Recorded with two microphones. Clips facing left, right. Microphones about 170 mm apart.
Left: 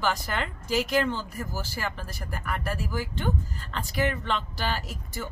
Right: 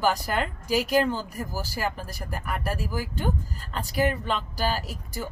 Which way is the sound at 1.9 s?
40° right (ahead or behind).